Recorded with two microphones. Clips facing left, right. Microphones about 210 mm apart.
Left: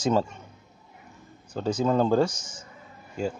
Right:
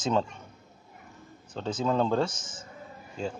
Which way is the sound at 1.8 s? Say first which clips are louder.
Left 4 dB; 5° left (ahead or behind).